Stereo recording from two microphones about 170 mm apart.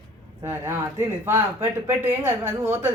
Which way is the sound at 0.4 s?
15° right (ahead or behind).